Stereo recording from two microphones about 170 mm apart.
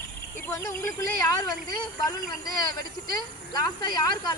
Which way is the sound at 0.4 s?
15° left (ahead or behind).